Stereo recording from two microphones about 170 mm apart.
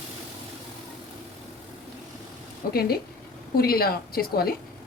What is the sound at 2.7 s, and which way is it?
A woman's voice, 65° left (ahead or behind).